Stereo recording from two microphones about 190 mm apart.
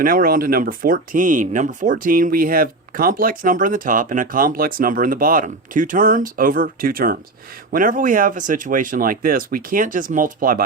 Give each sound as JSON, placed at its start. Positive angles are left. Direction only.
{"t": 0.0, "sound": "speech", "side_deg": -50}